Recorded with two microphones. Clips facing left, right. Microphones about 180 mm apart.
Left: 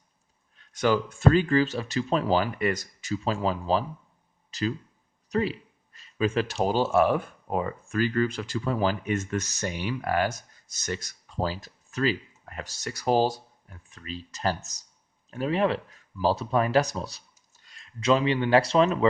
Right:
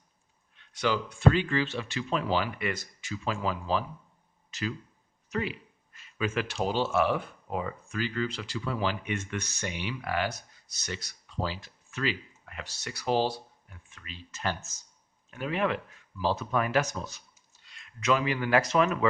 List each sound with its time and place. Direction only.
0.5 s speech: 45° left (ahead or behind)